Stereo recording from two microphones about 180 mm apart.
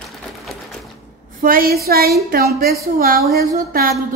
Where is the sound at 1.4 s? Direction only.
55° right (ahead or behind).